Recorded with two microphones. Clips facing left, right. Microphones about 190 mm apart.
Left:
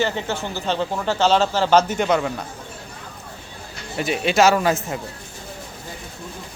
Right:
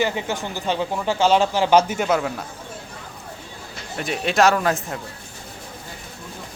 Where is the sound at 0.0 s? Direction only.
15° right (ahead or behind).